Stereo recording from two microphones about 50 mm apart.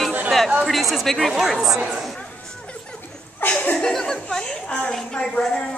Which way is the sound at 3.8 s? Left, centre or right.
Centre.